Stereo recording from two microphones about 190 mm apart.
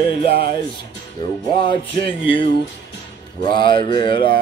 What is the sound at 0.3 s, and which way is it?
Speech, 50° right (ahead or behind).